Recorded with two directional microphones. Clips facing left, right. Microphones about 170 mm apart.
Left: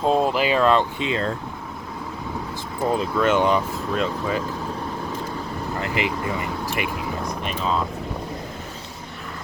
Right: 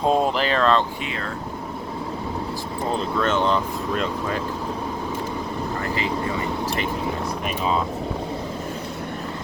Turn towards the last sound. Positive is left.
turn(degrees=-5)  # may be behind; listen again after turning